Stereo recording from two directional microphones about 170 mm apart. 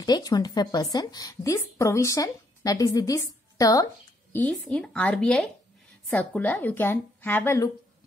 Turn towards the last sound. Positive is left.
turn(degrees=10)  # may be behind; listen again after turning